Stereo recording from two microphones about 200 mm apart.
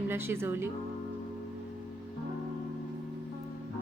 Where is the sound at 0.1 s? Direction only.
10° right (ahead or behind).